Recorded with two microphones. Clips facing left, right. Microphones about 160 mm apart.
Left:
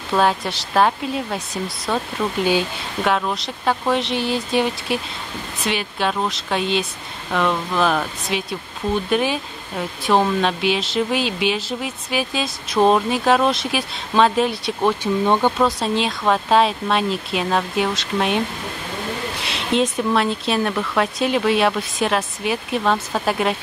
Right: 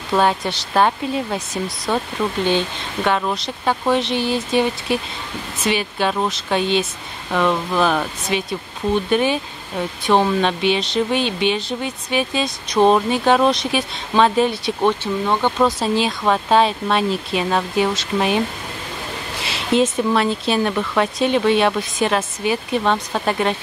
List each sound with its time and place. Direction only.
0.1 s speech: centre (ahead or behind)
15.2 s speech: 15° left (ahead or behind)
15.5 s speech: centre (ahead or behind)
19.4 s speech: centre (ahead or behind)